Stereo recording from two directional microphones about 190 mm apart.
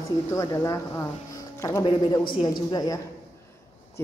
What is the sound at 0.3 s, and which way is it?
A woman's voice, 15° left (ahead or behind).